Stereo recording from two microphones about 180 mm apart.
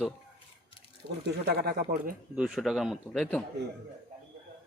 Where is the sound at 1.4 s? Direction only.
65° right (ahead or behind).